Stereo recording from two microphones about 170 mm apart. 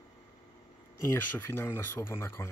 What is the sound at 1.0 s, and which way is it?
Speech, 15° left (ahead or behind).